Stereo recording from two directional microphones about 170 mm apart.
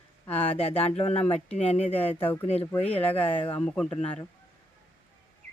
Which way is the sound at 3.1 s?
35° left (ahead or behind).